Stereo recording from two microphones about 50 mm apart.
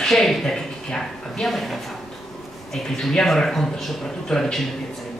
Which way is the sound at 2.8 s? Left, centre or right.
Centre.